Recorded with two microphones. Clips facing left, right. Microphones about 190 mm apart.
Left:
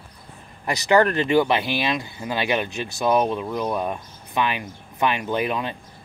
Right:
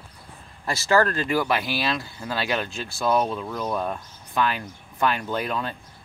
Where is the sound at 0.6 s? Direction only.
20° left (ahead or behind).